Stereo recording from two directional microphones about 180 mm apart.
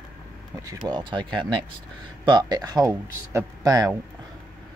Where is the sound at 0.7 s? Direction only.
25° right (ahead or behind).